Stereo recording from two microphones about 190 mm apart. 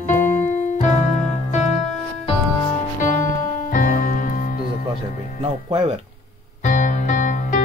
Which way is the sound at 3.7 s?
45° left (ahead or behind).